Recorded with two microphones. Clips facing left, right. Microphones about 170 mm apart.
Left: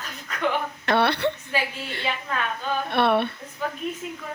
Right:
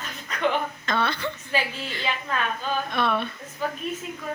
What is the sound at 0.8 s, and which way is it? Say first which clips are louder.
Speech: left 8 dB; 70° left (ahead or behind).